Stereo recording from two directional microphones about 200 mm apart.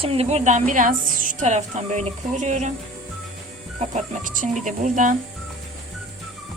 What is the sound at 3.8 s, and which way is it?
A woman's voice, 40° right (ahead or behind).